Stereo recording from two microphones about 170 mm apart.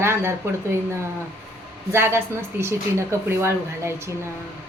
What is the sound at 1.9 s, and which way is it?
Speech, 15° right (ahead or behind).